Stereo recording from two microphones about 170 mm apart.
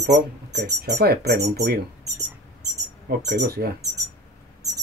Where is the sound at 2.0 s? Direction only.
20° right (ahead or behind).